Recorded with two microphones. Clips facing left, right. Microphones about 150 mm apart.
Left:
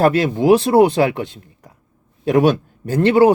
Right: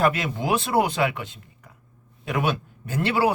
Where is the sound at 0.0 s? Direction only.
30° left (ahead or behind).